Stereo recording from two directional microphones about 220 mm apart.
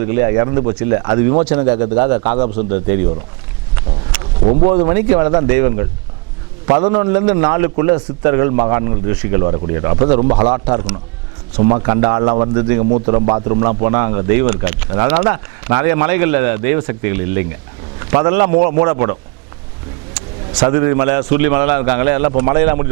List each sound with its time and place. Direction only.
0.0 s speech: 15° right (ahead or behind)
2.3 s a man's voice: 35° right (ahead or behind)
2.6 s speech: 10° right (ahead or behind)
3.8 s a sound: 15° right (ahead or behind)
4.9 s speech: 10° right (ahead or behind)
10.2 s a man's voice: 35° right (ahead or behind)
10.5 s a man's voice: 10° right (ahead or behind)
18.0 s vehicle: 20° right (ahead or behind)
18.3 s speech: 10° right (ahead or behind)
20.5 s speech: 10° right (ahead or behind)